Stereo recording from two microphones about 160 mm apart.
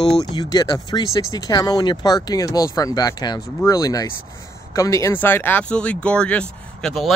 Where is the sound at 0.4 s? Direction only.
25° left (ahead or behind).